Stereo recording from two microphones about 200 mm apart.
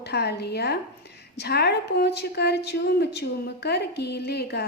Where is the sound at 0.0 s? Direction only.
55° left (ahead or behind).